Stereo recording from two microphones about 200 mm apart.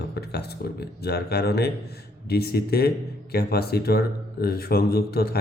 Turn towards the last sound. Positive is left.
turn(degrees=50)  # may be behind; listen again after turning